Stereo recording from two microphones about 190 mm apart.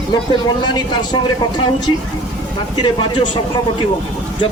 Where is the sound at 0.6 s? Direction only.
25° left (ahead or behind).